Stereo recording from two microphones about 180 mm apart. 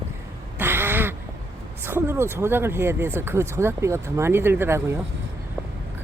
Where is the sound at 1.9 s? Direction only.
10° right (ahead or behind).